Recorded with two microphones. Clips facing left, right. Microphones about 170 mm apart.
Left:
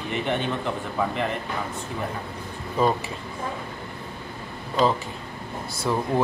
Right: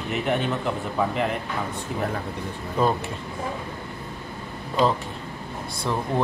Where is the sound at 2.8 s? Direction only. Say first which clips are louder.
Even; centre (ahead or behind).